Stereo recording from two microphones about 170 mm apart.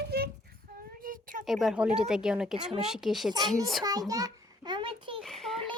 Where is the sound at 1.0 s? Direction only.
55° right (ahead or behind).